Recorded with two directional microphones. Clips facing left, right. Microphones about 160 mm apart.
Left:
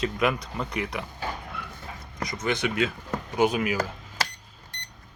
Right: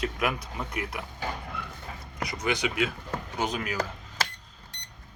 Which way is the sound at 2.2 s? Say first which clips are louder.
Left 1 dB; 10° right (ahead or behind).